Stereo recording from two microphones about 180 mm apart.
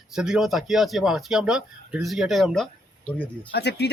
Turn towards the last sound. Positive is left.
turn(degrees=65)  # may be behind; listen again after turning